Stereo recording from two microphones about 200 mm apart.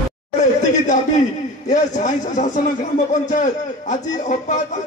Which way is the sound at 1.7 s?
40° left (ahead or behind).